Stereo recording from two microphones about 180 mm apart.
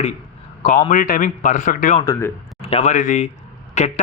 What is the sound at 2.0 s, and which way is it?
Speech, 15° left (ahead or behind).